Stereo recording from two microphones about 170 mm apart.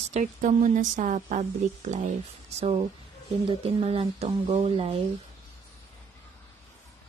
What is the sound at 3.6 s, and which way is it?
Speech, 35° right (ahead or behind).